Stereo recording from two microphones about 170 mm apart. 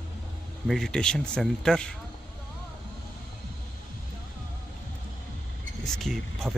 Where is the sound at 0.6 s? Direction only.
Centre (ahead or behind).